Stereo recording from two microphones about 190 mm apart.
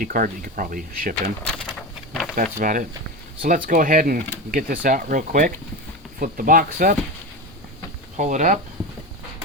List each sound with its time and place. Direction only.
0.0 s speech: 50° right (ahead or behind)
1.1 s speech: 5° left (ahead or behind)
2.3 s speech: 45° right (ahead or behind)
8.1 s speech: 40° right (ahead or behind)